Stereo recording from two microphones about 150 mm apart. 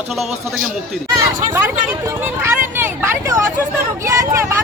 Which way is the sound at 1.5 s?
15° right (ahead or behind).